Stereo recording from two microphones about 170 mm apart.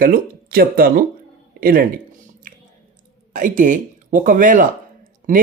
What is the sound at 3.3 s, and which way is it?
Speech, 50° right (ahead or behind).